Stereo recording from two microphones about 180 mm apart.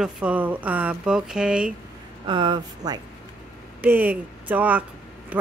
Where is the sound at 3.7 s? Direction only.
10° right (ahead or behind).